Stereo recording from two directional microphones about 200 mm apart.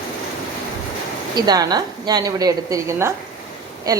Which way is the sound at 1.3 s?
20° right (ahead or behind).